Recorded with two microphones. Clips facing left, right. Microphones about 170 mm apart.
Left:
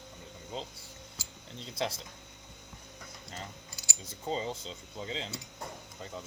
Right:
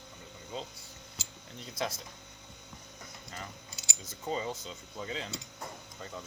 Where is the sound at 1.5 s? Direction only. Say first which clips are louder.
Left 1 dB; 25° left (ahead or behind).